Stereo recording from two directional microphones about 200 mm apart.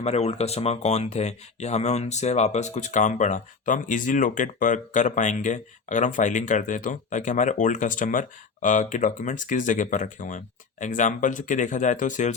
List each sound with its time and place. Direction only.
0.0 s speech: 30° left (ahead or behind)